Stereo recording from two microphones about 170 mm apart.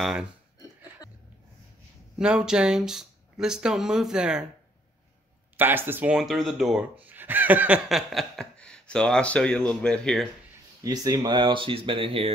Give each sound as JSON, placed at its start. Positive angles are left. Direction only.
{"t": 0.0, "sound": "speech", "side_deg": -5}
{"t": 2.1, "sound": "speech", "side_deg": -5}
{"t": 5.6, "sound": "speech", "side_deg": -10}
{"t": 10.8, "sound": "speech", "side_deg": -20}